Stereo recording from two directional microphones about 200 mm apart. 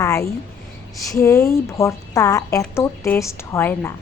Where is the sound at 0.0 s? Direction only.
15° left (ahead or behind).